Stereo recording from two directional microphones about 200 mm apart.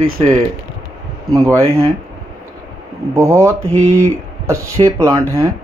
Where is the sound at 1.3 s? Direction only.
15° right (ahead or behind).